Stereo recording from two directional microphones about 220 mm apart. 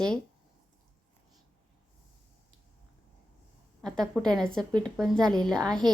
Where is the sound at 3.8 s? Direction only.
Centre (ahead or behind).